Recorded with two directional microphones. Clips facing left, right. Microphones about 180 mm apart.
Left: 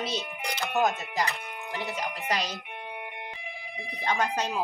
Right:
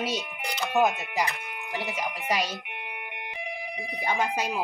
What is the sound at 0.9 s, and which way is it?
Speech, 15° right (ahead or behind).